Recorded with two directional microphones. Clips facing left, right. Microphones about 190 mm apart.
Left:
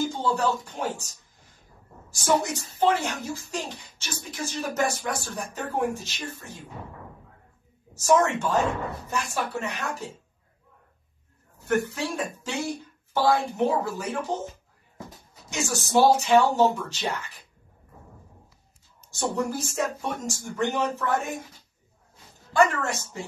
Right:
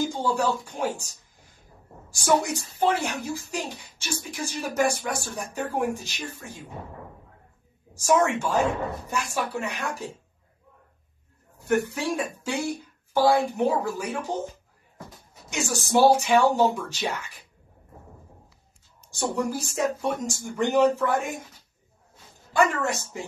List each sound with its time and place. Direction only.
0.1 s a woman's voice: 10° right (ahead or behind)
2.1 s a woman's voice: 10° right (ahead or behind)
7.9 s a woman's voice: 10° right (ahead or behind)
11.6 s a woman's voice: 15° right (ahead or behind)
15.5 s a woman's voice: 15° right (ahead or behind)
19.0 s a woman's voice: 15° right (ahead or behind)
22.7 s a woman's voice: 15° right (ahead or behind)